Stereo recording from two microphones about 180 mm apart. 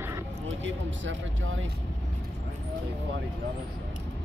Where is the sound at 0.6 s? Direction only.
90° right.